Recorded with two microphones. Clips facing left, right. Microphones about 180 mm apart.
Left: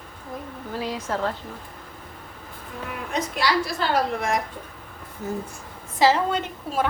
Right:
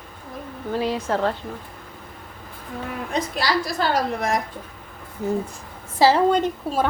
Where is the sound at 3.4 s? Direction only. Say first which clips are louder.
Even; 35° right (ahead or behind).